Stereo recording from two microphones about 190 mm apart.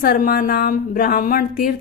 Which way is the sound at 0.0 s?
50° left (ahead or behind).